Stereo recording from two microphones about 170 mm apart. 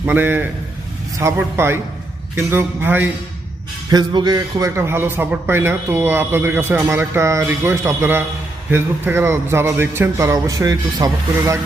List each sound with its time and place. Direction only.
0.0 s a man's voice: 10° right (ahead or behind)
3.8 s a man's voice: 25° right (ahead or behind)